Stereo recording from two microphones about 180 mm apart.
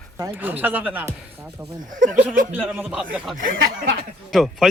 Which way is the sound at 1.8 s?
45° right (ahead or behind).